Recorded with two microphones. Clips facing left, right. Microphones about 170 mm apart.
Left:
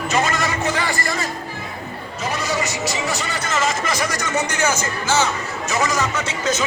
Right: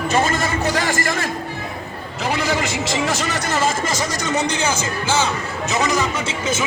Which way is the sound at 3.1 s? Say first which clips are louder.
Right 3 dB; 90° right.